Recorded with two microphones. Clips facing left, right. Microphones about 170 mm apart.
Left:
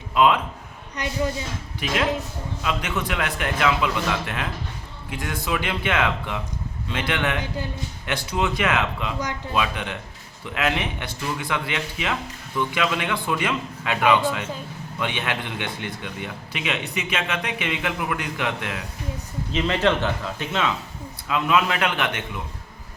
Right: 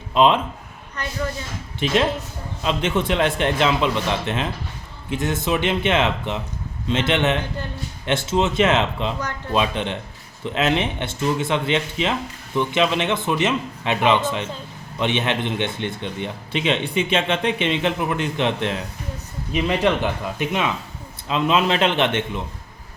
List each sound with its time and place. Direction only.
0.1 s a man's voice: 25° right (ahead or behind)
1.8 s a man's voice: 25° right (ahead or behind)
19.5 s a man's voice: 10° right (ahead or behind)